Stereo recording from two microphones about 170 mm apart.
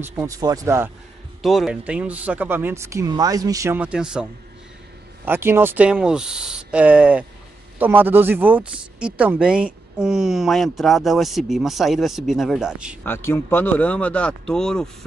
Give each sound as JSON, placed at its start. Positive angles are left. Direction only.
{"t": 0.0, "sound": "speech", "side_deg": -15}
{"t": 1.4, "sound": "speech", "side_deg": 0}
{"t": 13.0, "sound": "speech", "side_deg": 15}